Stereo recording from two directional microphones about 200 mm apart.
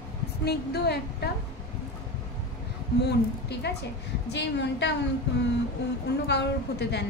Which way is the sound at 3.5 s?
55° left (ahead or behind).